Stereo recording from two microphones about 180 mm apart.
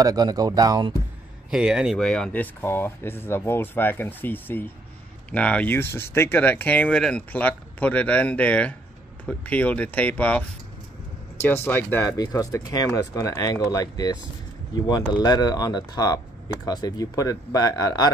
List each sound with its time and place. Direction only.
0.0 s speech: 20° right (ahead or behind)
1.5 s speech: 5° right (ahead or behind); by 18.1 s 20° left (ahead or behind)